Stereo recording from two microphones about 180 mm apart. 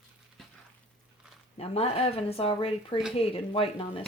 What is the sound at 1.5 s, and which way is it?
Speech, 35° left (ahead or behind).